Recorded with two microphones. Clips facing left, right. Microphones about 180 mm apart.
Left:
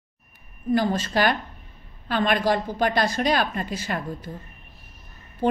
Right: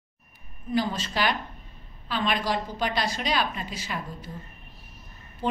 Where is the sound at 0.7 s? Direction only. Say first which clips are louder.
Left 5 dB; 50° left (ahead or behind).